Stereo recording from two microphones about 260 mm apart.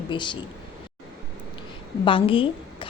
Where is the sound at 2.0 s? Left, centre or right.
Centre.